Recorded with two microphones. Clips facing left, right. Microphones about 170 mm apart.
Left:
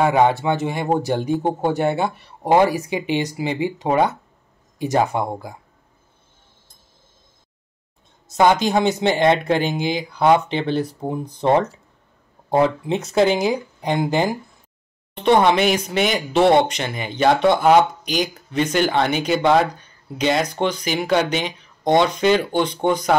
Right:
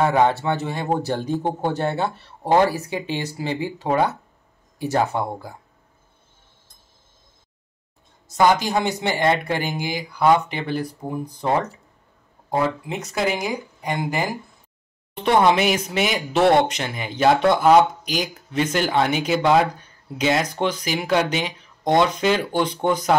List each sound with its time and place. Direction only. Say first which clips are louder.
0.0 s speech: left 2 dB; 15° left (ahead or behind)
8.3 s speech: left 2 dB; 25° left (ahead or behind)
15.2 s speech: left 2 dB; 5° right (ahead or behind)